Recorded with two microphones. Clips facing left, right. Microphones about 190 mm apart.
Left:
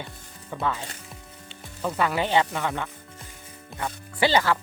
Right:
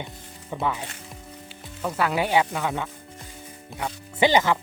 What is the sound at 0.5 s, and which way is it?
Speech, 15° right (ahead or behind).